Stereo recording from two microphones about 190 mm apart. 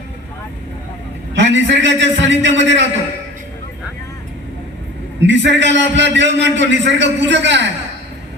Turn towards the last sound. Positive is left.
turn(degrees=-70)  # may be behind; listen again after turning